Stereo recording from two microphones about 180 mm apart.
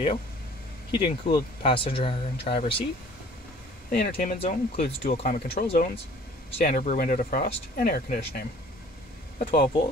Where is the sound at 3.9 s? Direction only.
55° left (ahead or behind).